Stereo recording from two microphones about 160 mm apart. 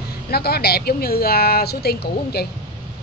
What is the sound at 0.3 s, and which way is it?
A woman's voice, 80° left.